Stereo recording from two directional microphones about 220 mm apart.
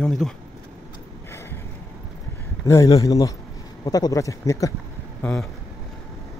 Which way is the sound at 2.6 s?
15° left (ahead or behind).